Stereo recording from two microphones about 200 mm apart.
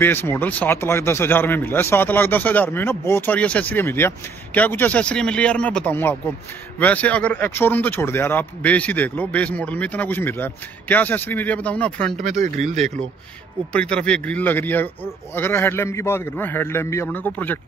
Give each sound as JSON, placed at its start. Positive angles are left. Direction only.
{"t": 0.0, "sound": "speech", "side_deg": 10}
{"t": 12.2, "sound": "speech", "side_deg": -40}
{"t": 13.7, "sound": "speech", "side_deg": 5}